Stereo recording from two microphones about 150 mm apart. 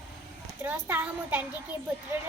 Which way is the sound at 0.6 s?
15° right (ahead or behind).